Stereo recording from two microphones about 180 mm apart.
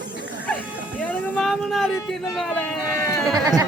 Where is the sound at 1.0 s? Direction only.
10° left (ahead or behind).